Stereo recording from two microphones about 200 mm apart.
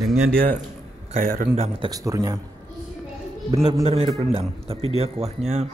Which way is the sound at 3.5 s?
30° right (ahead or behind).